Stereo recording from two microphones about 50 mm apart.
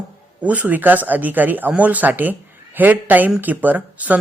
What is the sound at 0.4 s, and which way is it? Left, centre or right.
Speech, right.